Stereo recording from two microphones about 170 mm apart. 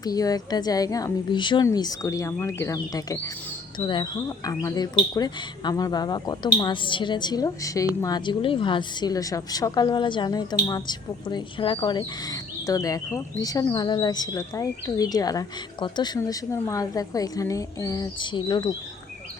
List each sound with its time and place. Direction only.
0.0 s speech: 20° left (ahead or behind)